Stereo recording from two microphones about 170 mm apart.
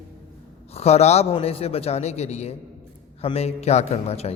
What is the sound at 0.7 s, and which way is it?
A woman's voice, 40° left (ahead or behind).